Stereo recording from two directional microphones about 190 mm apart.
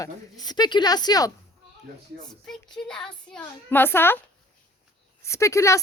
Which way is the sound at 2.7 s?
5° left (ahead or behind).